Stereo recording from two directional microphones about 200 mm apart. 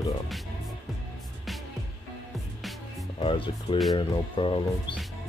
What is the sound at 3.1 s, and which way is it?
Speech, 25° left (ahead or behind).